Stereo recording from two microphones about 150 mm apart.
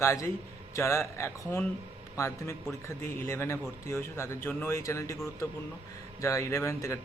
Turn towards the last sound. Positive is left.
turn(degrees=20)  # may be behind; listen again after turning